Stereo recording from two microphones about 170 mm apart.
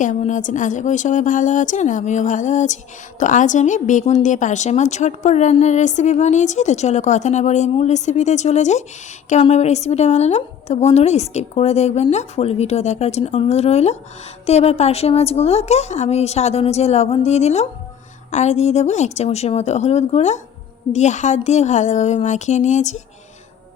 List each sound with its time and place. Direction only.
0.0 s a woman's voice: 50° left (ahead or behind)